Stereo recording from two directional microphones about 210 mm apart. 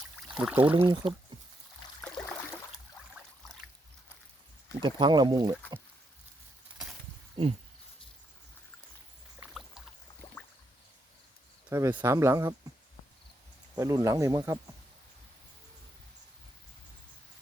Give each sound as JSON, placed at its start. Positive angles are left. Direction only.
{"t": 0.3, "sound": "speech", "side_deg": -5}
{"t": 2.0, "sound": "a sound", "side_deg": 5}
{"t": 4.8, "sound": "speech", "side_deg": -20}
{"t": 7.4, "sound": "speech", "side_deg": -25}
{"t": 9.4, "sound": "rowboat", "side_deg": -5}
{"t": 11.7, "sound": "speech", "side_deg": -10}
{"t": 13.7, "sound": "speech", "side_deg": -15}